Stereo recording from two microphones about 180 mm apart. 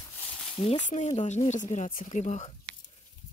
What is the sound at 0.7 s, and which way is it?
Speech, 40° left (ahead or behind).